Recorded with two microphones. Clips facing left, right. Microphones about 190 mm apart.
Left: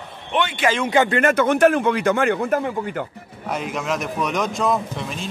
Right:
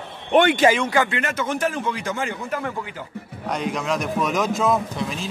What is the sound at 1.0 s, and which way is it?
Speech, 50° left (ahead or behind).